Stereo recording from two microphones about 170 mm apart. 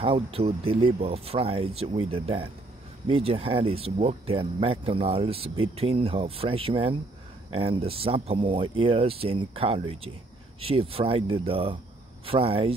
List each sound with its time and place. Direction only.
0.0 s speech: 35° right (ahead or behind)